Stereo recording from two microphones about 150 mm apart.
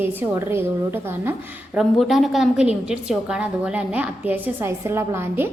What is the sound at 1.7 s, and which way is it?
A woman's voice, centre (ahead or behind).